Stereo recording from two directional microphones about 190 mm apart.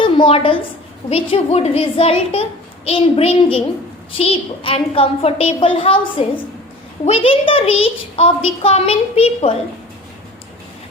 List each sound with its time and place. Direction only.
0.0 s a woman's voice: 25° left (ahead or behind)